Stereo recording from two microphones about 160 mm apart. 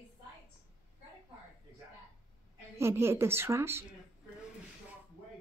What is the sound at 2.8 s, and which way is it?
A woman's voice, 15° right (ahead or behind).